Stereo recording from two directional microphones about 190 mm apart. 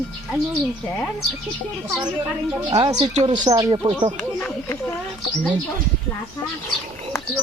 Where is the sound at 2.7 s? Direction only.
20° right (ahead or behind).